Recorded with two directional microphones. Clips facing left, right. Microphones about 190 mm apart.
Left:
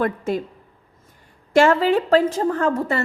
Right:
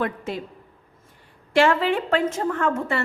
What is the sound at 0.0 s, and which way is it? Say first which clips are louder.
Speech: left 5 dB; 45° left (ahead or behind).